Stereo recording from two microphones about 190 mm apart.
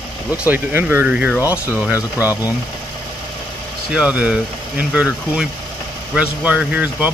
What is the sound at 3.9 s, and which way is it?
Speech, 5° right (ahead or behind).